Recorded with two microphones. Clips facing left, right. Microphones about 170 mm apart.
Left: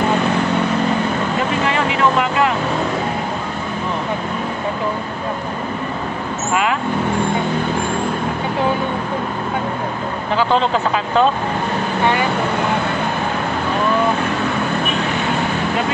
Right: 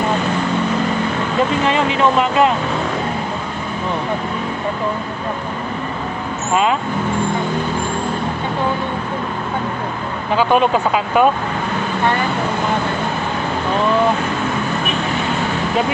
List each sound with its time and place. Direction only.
1.7 s speech: 20° right (ahead or behind)
10.3 s speech: 15° right (ahead or behind)